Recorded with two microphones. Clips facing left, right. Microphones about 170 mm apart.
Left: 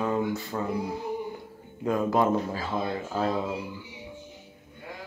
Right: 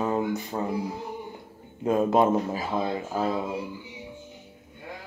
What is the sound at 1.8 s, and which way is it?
Speech, 25° right (ahead or behind).